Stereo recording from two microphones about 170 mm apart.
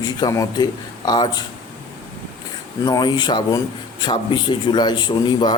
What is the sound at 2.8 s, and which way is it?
Speech, 25° left (ahead or behind).